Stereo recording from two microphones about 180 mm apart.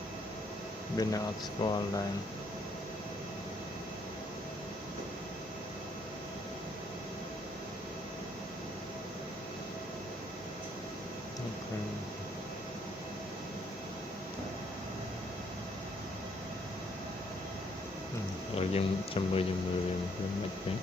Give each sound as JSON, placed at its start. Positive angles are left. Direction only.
{"t": 1.0, "sound": "speech", "side_deg": 20}
{"t": 18.5, "sound": "speech", "side_deg": 35}